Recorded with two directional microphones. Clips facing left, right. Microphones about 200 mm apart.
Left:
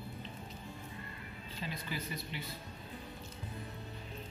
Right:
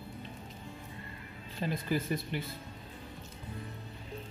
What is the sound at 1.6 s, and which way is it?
Speech, 50° right (ahead or behind).